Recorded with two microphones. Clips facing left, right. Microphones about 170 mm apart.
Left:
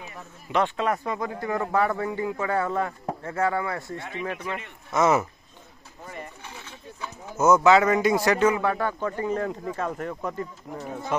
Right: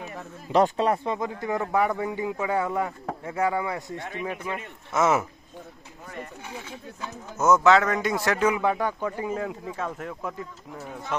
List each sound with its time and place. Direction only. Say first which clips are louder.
0.5 s speech: right 3 dB; 35° right (ahead or behind); by 5.2 s 5° right (ahead or behind)
7.3 s speech: left 1 dB; centre (ahead or behind)
8.5 s speech: left 1 dB; 15° right (ahead or behind)